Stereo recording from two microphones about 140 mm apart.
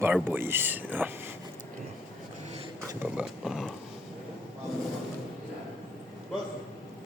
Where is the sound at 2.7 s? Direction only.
20° right (ahead or behind).